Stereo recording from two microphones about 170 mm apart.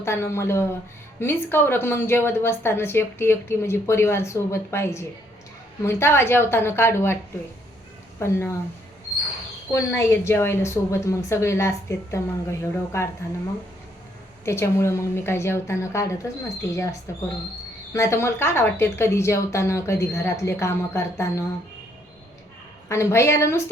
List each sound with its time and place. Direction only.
0.0 s a woman's voice: 15° left (ahead or behind)
8.2 s a woman's voice: 15° left (ahead or behind)
9.7 s a woman's voice: 15° left (ahead or behind)
14.4 s a woman's voice: 15° left (ahead or behind)
17.9 s a woman's voice: 15° left (ahead or behind)
22.9 s a woman's voice: 15° left (ahead or behind)